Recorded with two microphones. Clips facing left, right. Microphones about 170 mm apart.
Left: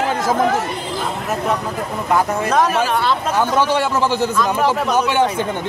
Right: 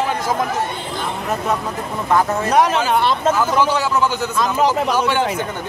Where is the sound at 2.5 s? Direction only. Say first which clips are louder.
Right 2 dB; 20° right (ahead or behind).